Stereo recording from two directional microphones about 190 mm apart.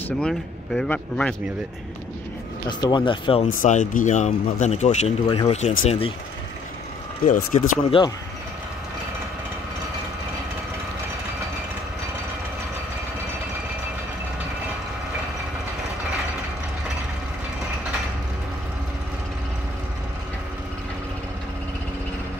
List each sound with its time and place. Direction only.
0.2 s speech: 5° left (ahead or behind)
2.8 s speech: 25° left (ahead or behind)
3.4 s speech: 45° left (ahead or behind)
7.2 s speech: 45° left (ahead or behind)
7.9 s speech: 30° left (ahead or behind)